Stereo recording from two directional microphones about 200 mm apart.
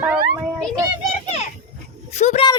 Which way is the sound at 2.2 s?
35° left (ahead or behind).